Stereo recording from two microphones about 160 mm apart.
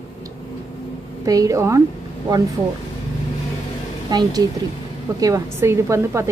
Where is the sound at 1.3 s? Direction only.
20° right (ahead or behind).